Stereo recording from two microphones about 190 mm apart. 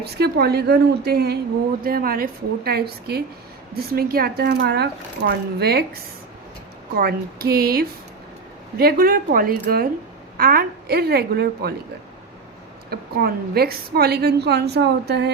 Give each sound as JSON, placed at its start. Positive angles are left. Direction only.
{"t": 0.0, "sound": "a woman's voice", "side_deg": -60}
{"t": 12.9, "sound": "a woman's voice", "side_deg": -55}